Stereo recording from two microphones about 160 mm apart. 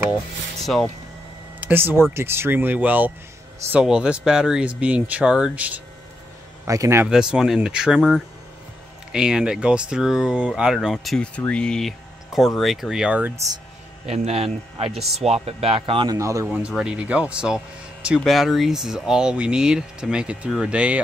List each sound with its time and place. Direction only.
0.7 s speech: centre (ahead or behind)
1.6 s speech: 10° right (ahead or behind)
7.1 s speech: 5° right (ahead or behind)
14.0 s speech: 40° right (ahead or behind)
16.2 s speech: 20° right (ahead or behind)
16.4 s speech: 5° right (ahead or behind)